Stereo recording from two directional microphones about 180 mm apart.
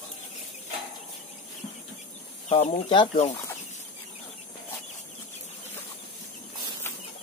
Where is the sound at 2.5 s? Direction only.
40° left (ahead or behind).